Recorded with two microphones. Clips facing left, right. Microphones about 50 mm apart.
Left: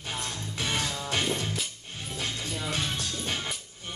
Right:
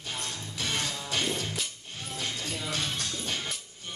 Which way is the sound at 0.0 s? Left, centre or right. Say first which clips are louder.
Left 2 dB; centre.